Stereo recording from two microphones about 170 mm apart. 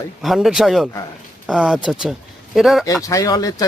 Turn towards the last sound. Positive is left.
turn(degrees=20)  # may be behind; listen again after turning